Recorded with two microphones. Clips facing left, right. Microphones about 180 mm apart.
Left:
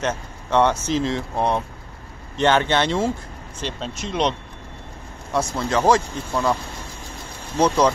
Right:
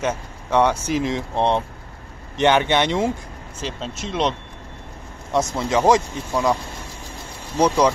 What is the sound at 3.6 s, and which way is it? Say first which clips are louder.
Speech: even; centre (ahead or behind).